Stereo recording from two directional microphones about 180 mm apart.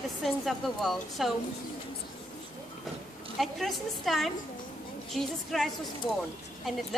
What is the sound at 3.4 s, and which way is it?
A woman's voice, centre (ahead or behind).